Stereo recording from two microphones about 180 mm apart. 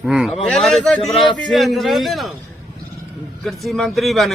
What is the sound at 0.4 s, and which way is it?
A man's voice, centre (ahead or behind).